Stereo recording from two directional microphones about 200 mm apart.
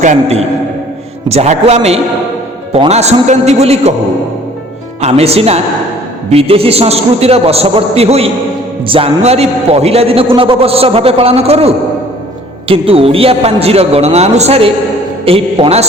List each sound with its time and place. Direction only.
0.0 s a man's voice: 35° right (ahead or behind)
4.9 s a man's voice: 30° right (ahead or behind)